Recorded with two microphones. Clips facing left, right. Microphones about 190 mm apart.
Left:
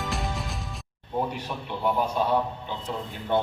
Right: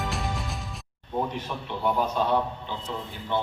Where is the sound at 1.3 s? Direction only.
10° left (ahead or behind).